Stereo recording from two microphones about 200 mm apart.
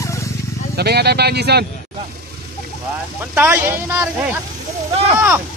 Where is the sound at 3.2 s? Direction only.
10° right (ahead or behind).